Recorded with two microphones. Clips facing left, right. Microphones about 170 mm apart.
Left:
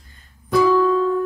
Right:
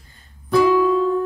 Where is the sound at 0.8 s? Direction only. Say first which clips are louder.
Even; 15° right (ahead or behind).